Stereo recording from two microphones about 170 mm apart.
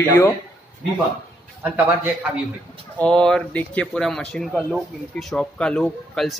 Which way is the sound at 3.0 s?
5° left (ahead or behind).